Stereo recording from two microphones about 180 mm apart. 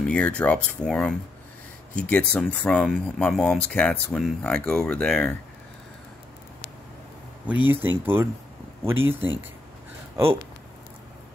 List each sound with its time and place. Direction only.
0.0 s speech: 5° left (ahead or behind)
7.4 s speech: 10° right (ahead or behind)